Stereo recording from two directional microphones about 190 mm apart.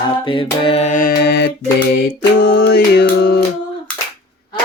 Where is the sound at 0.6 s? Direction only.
30° left (ahead or behind); by 3.4 s 60° left (ahead or behind).